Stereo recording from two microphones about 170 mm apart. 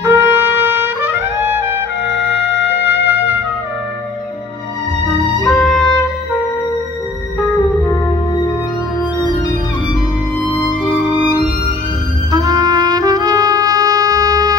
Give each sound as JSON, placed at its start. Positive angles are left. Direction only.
{"t": 0.0, "sound": "music", "side_deg": -15}
{"t": 2.0, "sound": "trumpet", "side_deg": 85}
{"t": 2.7, "sound": "music", "side_deg": -10}
{"t": 5.6, "sound": "music", "side_deg": 5}
{"t": 12.3, "sound": "music", "side_deg": -25}